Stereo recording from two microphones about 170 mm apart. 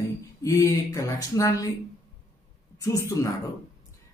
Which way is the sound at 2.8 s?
20° left (ahead or behind).